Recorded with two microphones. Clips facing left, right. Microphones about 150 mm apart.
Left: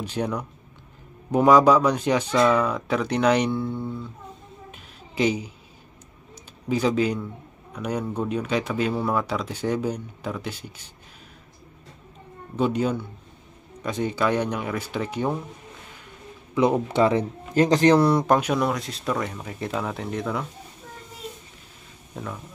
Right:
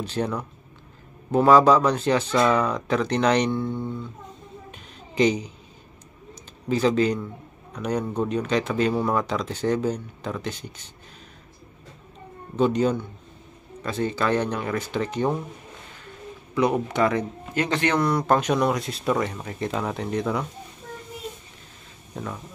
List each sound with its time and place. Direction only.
0.0 s speech: 10° left (ahead or behind)
4.6 s a sound: 5° left (ahead or behind)
6.7 s a man's voice: 10° left (ahead or behind)
12.5 s speech: 10° left (ahead or behind)
16.5 s a man's voice: 25° left (ahead or behind)
17.6 s speech: 35° left (ahead or behind)
18.2 s speech: 10° left (ahead or behind)
22.1 s speech: centre (ahead or behind)